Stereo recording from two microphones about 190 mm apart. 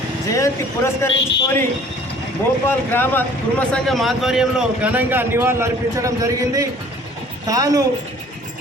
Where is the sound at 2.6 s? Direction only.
10° left (ahead or behind); by 7.8 s 20° right (ahead or behind).